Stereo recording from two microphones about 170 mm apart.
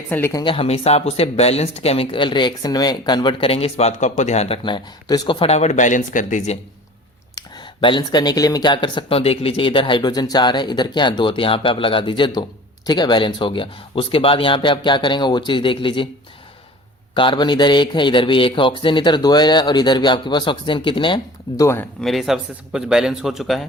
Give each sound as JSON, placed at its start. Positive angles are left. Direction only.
{"t": 0.1, "sound": "speech", "side_deg": 15}
{"t": 0.4, "sound": "speech", "side_deg": 35}
{"t": 7.3, "sound": "speech", "side_deg": 30}
{"t": 17.2, "sound": "speech", "side_deg": 30}
{"t": 21.6, "sound": "speech", "side_deg": 15}
{"t": 22.0, "sound": "speech", "side_deg": 0}